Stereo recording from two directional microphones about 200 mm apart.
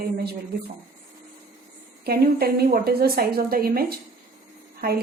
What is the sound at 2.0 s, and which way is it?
A woman's voice, 50° right (ahead or behind).